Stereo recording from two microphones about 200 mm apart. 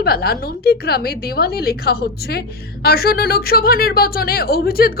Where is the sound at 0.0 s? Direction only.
50° left (ahead or behind).